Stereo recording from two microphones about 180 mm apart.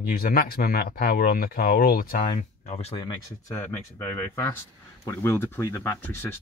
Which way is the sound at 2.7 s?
35° left (ahead or behind).